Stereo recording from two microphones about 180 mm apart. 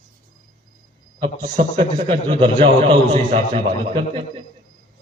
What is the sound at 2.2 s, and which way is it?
A man's voice, 30° right (ahead or behind).